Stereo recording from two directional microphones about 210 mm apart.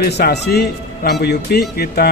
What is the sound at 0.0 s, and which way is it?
Speech, 50° left (ahead or behind).